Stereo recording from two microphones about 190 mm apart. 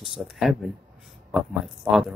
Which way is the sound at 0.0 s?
Centre (ahead or behind).